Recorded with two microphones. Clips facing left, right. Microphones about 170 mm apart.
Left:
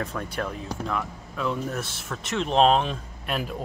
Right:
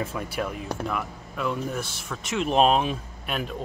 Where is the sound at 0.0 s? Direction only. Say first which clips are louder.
Right 1 dB; 5° right (ahead or behind).